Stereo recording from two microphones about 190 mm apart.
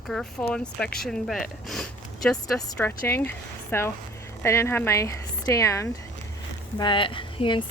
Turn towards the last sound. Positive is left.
turn(degrees=25)  # may be behind; listen again after turning